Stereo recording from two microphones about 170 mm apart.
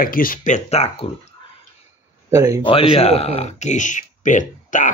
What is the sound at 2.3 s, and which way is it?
Speech, 15° right (ahead or behind).